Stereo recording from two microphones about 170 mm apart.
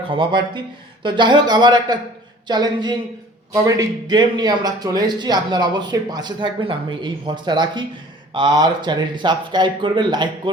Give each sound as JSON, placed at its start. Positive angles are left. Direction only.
{"t": 0.1, "sound": "speech", "side_deg": -30}